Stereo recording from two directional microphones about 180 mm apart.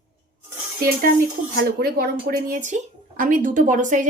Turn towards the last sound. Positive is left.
turn(degrees=-45)  # may be behind; listen again after turning